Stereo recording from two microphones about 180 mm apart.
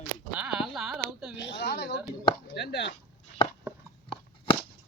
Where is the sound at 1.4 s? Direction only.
75° left (ahead or behind).